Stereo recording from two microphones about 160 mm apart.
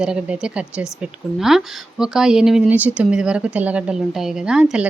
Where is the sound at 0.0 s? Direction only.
5° right (ahead or behind).